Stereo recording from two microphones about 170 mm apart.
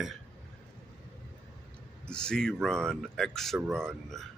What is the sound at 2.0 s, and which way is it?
Speech, 5° left (ahead or behind).